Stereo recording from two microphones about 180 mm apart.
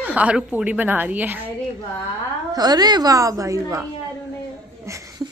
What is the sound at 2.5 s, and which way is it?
A woman's voice, 20° right (ahead or behind).